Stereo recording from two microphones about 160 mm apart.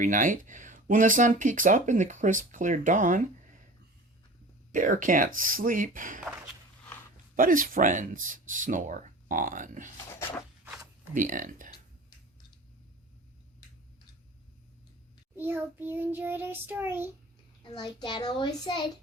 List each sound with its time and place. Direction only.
0.0 s speech: 55° right (ahead or behind)
4.7 s speech: 55° right (ahead or behind)
7.3 s speech: 60° right (ahead or behind)
11.1 s speech: 55° right (ahead or behind)
15.4 s child singing: 15° right (ahead or behind)
17.6 s a child's voice: 30° left (ahead or behind)